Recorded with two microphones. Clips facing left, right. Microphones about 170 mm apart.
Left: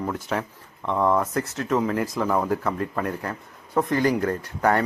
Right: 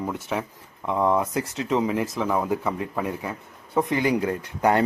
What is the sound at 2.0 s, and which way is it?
Speech, centre (ahead or behind).